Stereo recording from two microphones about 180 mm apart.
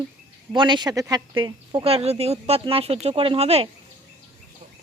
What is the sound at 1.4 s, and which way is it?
Speech, 30° right (ahead or behind).